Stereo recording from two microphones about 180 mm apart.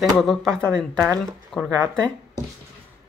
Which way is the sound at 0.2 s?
Centre (ahead or behind).